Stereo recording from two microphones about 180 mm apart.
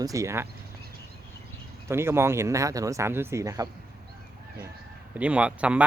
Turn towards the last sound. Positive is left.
turn(degrees=-5)  # may be behind; listen again after turning